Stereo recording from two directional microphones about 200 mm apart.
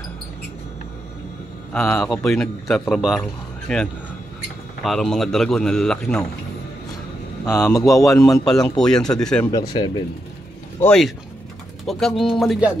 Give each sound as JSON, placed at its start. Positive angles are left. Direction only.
{"t": 1.7, "sound": "speech", "side_deg": 5}
{"t": 7.4, "sound": "speech", "side_deg": 15}
{"t": 8.5, "sound": "speech", "side_deg": 5}
{"t": 9.5, "sound": "speech", "side_deg": 20}
{"t": 10.8, "sound": "speech", "side_deg": 5}